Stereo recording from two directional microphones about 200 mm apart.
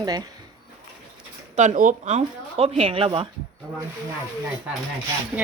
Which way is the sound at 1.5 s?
35° right (ahead or behind).